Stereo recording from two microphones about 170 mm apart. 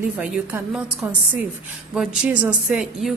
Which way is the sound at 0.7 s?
5° right (ahead or behind).